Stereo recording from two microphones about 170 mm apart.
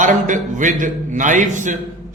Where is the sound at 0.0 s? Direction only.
45° right (ahead or behind).